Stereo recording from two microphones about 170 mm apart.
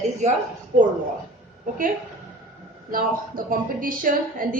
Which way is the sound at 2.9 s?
55° right (ahead or behind).